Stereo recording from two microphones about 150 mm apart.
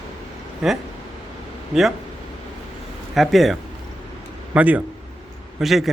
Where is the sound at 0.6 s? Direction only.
Centre (ahead or behind).